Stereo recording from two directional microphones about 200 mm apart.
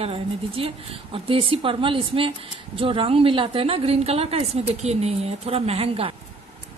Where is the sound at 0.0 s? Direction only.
30° right (ahead or behind).